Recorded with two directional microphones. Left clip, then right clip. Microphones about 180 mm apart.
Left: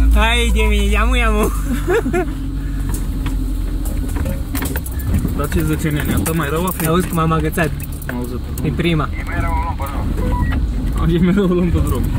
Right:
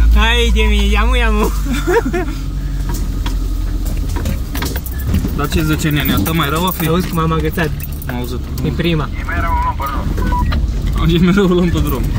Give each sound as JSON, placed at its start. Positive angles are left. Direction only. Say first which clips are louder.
{"t": 0.1, "sound": "speech", "louder": "right 2 dB", "side_deg": 25}
{"t": 5.7, "sound": "speech", "louder": "right 4 dB", "side_deg": -30}
{"t": 6.9, "sound": "speech", "louder": "even", "side_deg": 35}
{"t": 8.7, "sound": "speech", "louder": "even", "side_deg": 25}
{"t": 11.1, "sound": "speech", "louder": "right 3 dB", "side_deg": -35}